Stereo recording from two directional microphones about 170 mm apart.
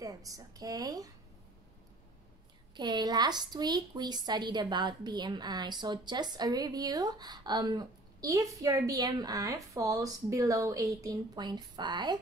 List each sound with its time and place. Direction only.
0.0 s a woman's voice: 20° right (ahead or behind)
2.7 s a woman's voice: 25° right (ahead or behind)